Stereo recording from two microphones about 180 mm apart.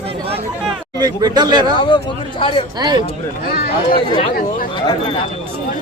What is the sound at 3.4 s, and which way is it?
Speech, 60° left (ahead or behind).